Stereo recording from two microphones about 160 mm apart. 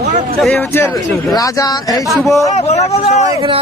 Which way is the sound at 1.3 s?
20° left (ahead or behind).